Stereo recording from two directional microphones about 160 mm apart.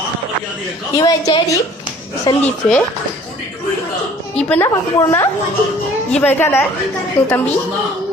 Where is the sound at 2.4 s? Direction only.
10° left (ahead or behind).